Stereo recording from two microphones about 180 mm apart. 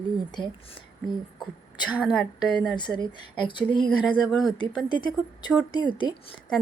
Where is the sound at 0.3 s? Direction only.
25° left (ahead or behind).